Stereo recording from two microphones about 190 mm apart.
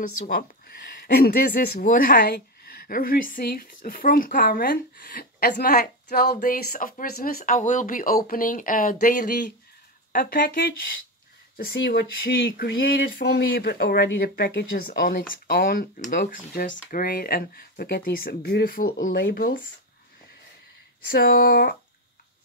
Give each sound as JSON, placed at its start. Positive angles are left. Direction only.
{"t": 0.2, "sound": "speech", "side_deg": 45}
{"t": 11.5, "sound": "speech", "side_deg": 55}
{"t": 21.1, "sound": "speech", "side_deg": 50}